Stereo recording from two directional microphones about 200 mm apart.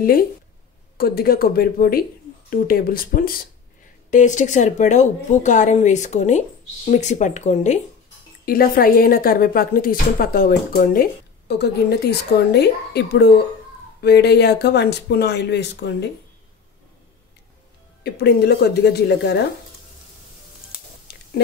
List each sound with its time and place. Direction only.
0.9 s speech: 50° left (ahead or behind)
8.5 s speech: 45° left (ahead or behind)
18.0 s speech: 55° left (ahead or behind)